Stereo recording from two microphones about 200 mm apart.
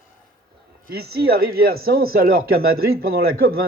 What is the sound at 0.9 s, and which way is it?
Speech, 50° right (ahead or behind).